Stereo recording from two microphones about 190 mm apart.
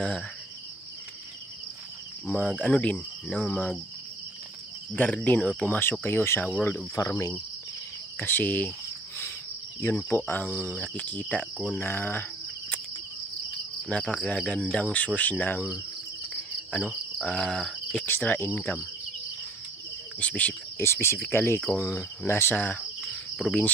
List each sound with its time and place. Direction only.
2.2 s cricket: 10° left (ahead or behind)
4.9 s cricket: 10° left (ahead or behind)
9.8 s cricket: 10° left (ahead or behind)
13.8 s cricket: 5° left (ahead or behind)
16.7 s cricket: 5° left (ahead or behind)
20.2 s cricket: 10° left (ahead or behind)